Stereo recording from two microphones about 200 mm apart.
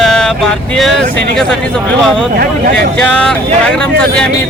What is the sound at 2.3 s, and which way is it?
Speech, 45° right (ahead or behind).